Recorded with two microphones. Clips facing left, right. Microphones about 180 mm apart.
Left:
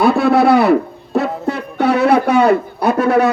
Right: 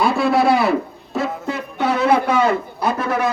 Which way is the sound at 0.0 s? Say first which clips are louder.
Left 5 dB; 60° left (ahead or behind).